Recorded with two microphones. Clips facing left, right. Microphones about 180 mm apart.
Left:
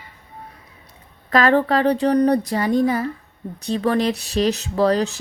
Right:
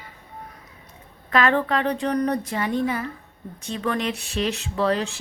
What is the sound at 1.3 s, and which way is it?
A woman's voice, 35° left (ahead or behind).